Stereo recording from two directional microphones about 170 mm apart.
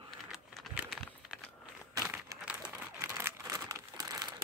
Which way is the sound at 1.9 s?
10° right (ahead or behind).